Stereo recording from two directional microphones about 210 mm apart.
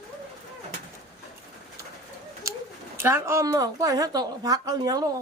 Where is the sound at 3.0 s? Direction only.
10° right (ahead or behind).